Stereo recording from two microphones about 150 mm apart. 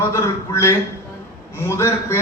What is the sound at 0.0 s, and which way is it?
A man's voice, 20° left (ahead or behind).